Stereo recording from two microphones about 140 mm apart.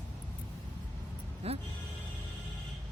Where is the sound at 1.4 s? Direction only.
45° right (ahead or behind).